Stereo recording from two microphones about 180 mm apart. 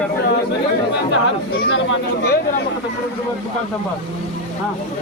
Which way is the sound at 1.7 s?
80° left.